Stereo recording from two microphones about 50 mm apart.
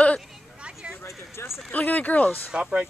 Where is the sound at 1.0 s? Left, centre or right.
Left.